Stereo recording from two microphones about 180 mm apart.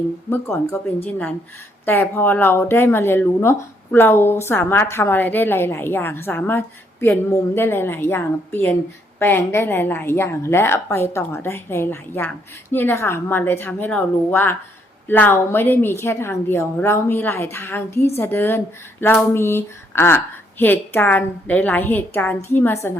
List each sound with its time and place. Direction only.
0.3 s a woman's voice: 15° left (ahead or behind)
1.8 s a woman's voice: 10° left (ahead or behind)